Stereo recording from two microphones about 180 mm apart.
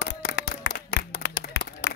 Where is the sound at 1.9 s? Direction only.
75° left (ahead or behind).